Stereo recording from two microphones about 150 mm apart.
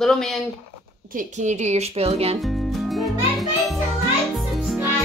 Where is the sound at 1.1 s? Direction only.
55° right (ahead or behind).